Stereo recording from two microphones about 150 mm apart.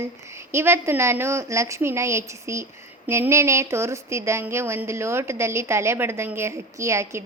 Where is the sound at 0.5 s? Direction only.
15° right (ahead or behind).